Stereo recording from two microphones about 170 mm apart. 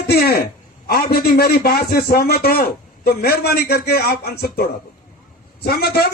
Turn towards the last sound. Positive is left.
turn(degrees=70)  # may be behind; listen again after turning